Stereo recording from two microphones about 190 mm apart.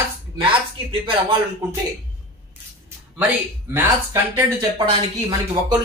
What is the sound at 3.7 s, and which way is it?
Speech, 15° right (ahead or behind).